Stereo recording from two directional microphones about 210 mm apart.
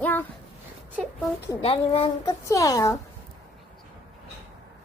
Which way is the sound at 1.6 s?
25° left (ahead or behind).